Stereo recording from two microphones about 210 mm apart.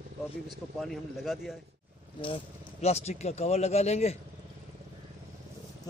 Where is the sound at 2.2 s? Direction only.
25° left (ahead or behind).